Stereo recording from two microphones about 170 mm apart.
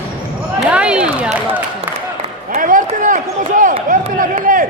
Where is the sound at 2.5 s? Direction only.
50° right (ahead or behind).